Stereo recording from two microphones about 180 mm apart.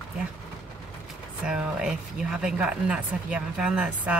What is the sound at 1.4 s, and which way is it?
A woman's voice, 5° right (ahead or behind).